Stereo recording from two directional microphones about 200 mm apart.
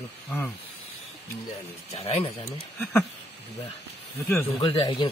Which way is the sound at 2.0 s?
30° left (ahead or behind).